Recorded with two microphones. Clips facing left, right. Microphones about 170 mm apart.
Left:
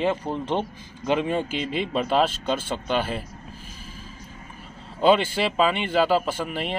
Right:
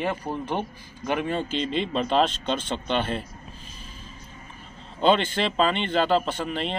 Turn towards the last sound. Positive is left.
turn(degrees=5)  # may be behind; listen again after turning